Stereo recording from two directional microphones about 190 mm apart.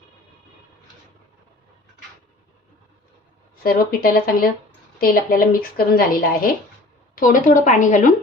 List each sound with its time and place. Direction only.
3.6 s speech: 50° left (ahead or behind)